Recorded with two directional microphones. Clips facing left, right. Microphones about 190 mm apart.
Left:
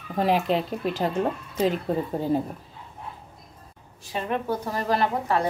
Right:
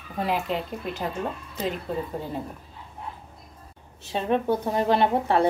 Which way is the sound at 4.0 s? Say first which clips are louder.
Right 4 dB; 25° right (ahead or behind).